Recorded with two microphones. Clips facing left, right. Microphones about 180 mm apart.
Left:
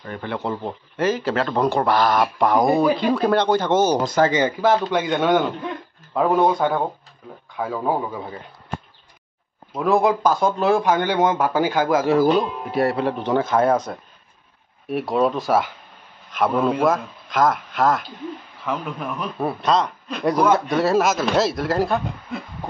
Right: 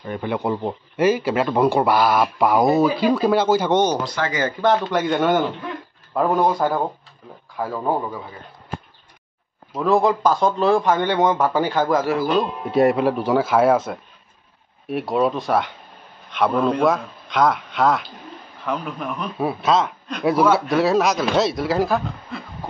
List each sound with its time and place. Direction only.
0.0 s a man's voice: 15° right (ahead or behind)
3.7 s speech: 5° left (ahead or behind)
4.0 s speech: 45° left (ahead or behind)
4.3 s speech: 20° left (ahead or behind)
4.9 s speech: centre (ahead or behind)
9.8 s speech: centre (ahead or behind)
12.7 s a man's voice: 15° right (ahead or behind); by 22.0 s centre (ahead or behind)